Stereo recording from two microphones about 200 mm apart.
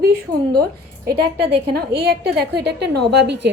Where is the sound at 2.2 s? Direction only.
55° right (ahead or behind).